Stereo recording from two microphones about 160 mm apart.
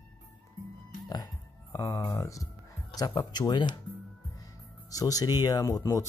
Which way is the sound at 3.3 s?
30° left (ahead or behind).